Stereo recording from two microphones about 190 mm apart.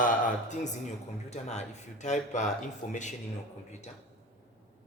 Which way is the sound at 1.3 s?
35° left (ahead or behind).